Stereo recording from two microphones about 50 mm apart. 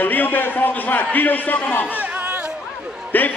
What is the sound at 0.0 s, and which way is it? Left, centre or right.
A man's voice, left.